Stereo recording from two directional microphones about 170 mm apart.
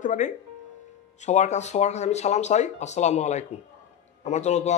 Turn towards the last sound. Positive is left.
turn(degrees=40)  # may be behind; listen again after turning